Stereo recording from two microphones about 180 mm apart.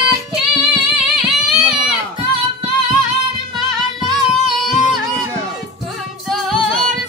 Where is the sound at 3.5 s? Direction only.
25° right (ahead or behind).